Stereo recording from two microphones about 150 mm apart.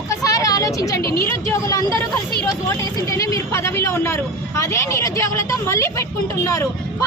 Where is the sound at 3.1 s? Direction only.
20° left (ahead or behind).